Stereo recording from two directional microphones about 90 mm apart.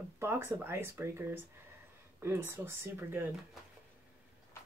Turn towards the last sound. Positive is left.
turn(degrees=-25)  # may be behind; listen again after turning